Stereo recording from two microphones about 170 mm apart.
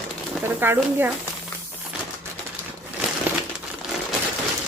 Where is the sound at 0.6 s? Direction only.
15° right (ahead or behind).